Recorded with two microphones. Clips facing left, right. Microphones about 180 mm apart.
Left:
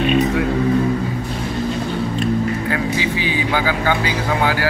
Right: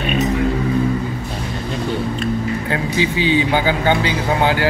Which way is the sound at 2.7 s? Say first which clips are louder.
Right 1 dB; 25° right (ahead or behind).